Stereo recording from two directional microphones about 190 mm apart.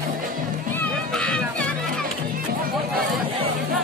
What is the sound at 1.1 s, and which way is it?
Music, 5° left (ahead or behind).